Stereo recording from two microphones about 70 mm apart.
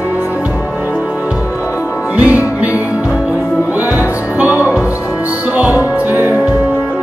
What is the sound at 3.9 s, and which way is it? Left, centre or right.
Music, right.